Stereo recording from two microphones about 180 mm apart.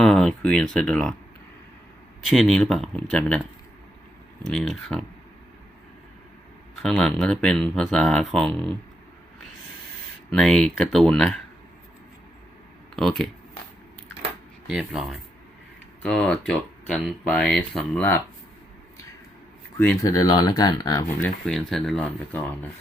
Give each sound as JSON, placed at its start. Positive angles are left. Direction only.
{"t": 0.0, "sound": "speech", "side_deg": 5}
{"t": 2.2, "sound": "speech", "side_deg": 5}
{"t": 4.4, "sound": "speech", "side_deg": 0}
{"t": 6.8, "sound": "speech", "side_deg": 5}
{"t": 10.2, "sound": "speech", "side_deg": 5}
{"t": 13.0, "sound": "speech", "side_deg": 0}
{"t": 14.7, "sound": "speech", "side_deg": 0}
{"t": 19.8, "sound": "speech", "side_deg": 10}
{"t": 20.1, "sound": "speech", "side_deg": 20}
{"t": 21.2, "sound": "speech", "side_deg": 5}